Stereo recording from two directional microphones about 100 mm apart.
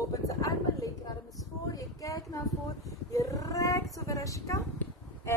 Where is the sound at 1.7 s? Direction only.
35° left (ahead or behind).